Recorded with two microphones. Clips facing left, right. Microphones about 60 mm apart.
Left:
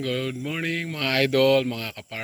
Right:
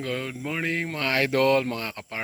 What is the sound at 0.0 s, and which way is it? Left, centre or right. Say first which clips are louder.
Speech: left 3 dB; right.